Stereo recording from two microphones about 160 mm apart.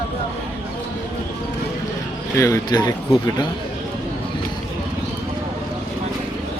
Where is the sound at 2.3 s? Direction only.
20° left (ahead or behind).